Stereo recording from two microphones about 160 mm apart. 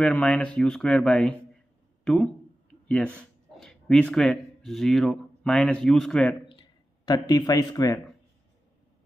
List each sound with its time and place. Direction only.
0.0 s speech: 5° left (ahead or behind)
6.5 s speech: 25° left (ahead or behind)